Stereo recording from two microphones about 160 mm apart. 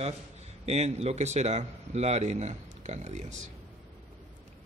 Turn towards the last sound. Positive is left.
turn(degrees=-45)  # may be behind; listen again after turning